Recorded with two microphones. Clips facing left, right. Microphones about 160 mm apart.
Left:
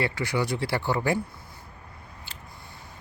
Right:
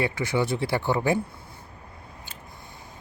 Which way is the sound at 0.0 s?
20° right (ahead or behind).